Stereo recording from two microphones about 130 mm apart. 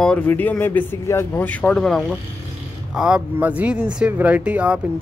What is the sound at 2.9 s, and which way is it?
Speech, 5° right (ahead or behind).